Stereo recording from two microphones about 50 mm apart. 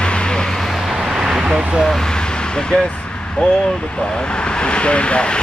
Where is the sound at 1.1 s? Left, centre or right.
Centre.